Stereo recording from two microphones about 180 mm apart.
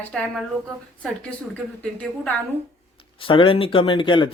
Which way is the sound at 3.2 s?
30° left (ahead or behind).